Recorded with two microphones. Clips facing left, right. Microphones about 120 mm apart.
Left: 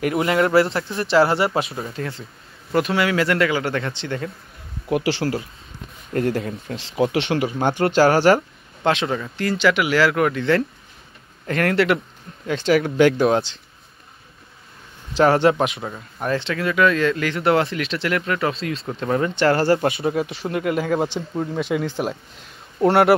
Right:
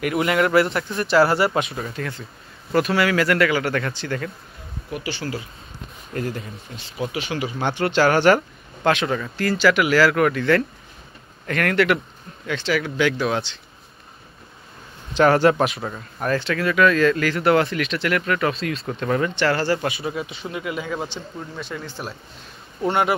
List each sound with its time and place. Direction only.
0.0 s speech: 30° left (ahead or behind)
4.8 s speech: 90° left
6.1 s speech: 65° left (ahead or behind)
7.8 s speech: 35° left (ahead or behind)
15.1 s speech: 25° left (ahead or behind)
15.8 s speech: 5° left (ahead or behind)
16.2 s speech: 20° left (ahead or behind)
19.4 s speech: 50° left (ahead or behind); by 21.8 s 70° left (ahead or behind)
22.8 s speech: 75° left (ahead or behind)